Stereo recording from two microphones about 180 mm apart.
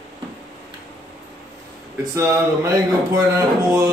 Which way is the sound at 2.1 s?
15° right (ahead or behind).